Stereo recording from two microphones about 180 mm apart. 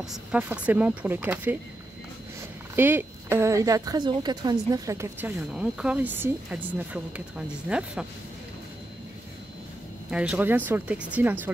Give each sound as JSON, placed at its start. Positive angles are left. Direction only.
{"t": 0.0, "sound": "a woman's voice", "side_deg": -5}
{"t": 2.7, "sound": "a woman's voice", "side_deg": -10}
{"t": 5.5, "sound": "a woman's voice", "side_deg": -5}
{"t": 10.1, "sound": "a woman's voice", "side_deg": -5}